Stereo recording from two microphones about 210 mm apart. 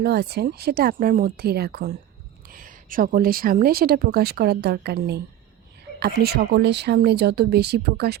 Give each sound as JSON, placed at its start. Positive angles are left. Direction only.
{"t": 0.0, "sound": "speech", "side_deg": -50}